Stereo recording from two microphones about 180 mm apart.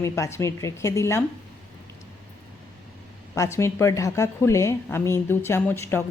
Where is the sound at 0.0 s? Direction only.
15° left (ahead or behind).